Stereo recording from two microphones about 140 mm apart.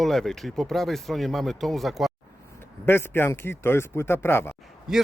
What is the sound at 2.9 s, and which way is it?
Speech, 15° left (ahead or behind).